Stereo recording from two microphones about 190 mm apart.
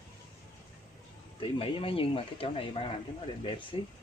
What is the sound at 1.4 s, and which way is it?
Speech, 25° left (ahead or behind).